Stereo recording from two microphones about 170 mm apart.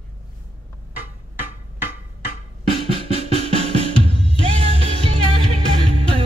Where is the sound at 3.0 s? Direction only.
35° right (ahead or behind).